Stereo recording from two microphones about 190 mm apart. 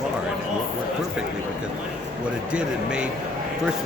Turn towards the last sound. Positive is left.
turn(degrees=-5)  # may be behind; listen again after turning